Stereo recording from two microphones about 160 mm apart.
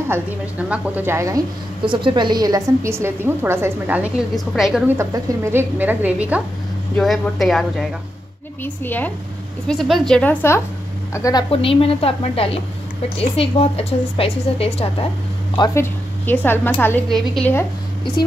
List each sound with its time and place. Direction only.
0.1 s a woman's voice: 10° right (ahead or behind)
1.9 s a woman's voice: 30° right (ahead or behind); by 4.9 s centre (ahead or behind)
4.9 s a woman's voice: 15° right (ahead or behind); by 7.9 s centre (ahead or behind)
8.6 s a woman's voice: 10° left (ahead or behind)
11.5 s a woman's voice: 35° left (ahead or behind)
15.7 s a woman's voice: 15° left (ahead or behind)